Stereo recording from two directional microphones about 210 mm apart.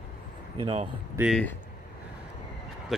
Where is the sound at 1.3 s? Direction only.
5° left (ahead or behind).